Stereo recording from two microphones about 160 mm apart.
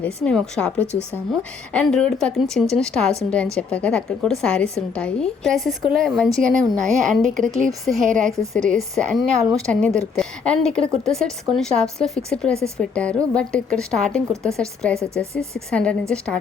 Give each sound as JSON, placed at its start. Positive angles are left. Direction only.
{"t": 0.0, "sound": "a woman's voice", "side_deg": 5}
{"t": 12.5, "sound": "speech", "side_deg": -15}
{"t": 12.8, "sound": "a woman's voice", "side_deg": 5}
{"t": 14.9, "sound": "speech", "side_deg": -15}
{"t": 15.7, "sound": "a woman's voice", "side_deg": 5}